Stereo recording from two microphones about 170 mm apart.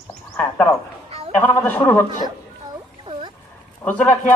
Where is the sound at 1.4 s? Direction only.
10° left (ahead or behind).